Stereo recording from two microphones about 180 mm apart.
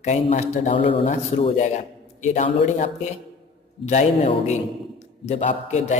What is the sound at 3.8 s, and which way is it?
A man's voice, 40° left (ahead or behind).